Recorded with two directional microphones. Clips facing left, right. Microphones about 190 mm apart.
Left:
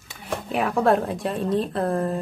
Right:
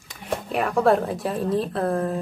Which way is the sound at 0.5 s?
Centre (ahead or behind).